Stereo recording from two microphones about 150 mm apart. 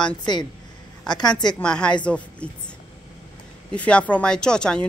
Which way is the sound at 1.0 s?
25° left (ahead or behind).